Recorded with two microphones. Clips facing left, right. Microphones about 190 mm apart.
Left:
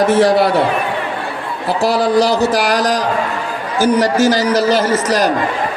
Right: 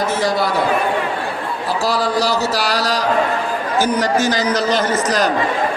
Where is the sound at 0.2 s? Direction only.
70° left (ahead or behind).